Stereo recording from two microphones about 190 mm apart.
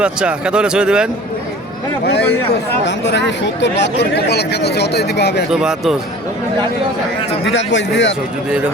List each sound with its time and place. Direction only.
0.0 s speech: 5° right (ahead or behind)
2.8 s speech: 70° left (ahead or behind)
5.5 s speech: 5° right (ahead or behind)
7.5 s speech: 70° left (ahead or behind)